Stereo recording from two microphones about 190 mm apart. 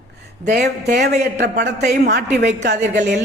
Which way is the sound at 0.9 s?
60° right (ahead or behind).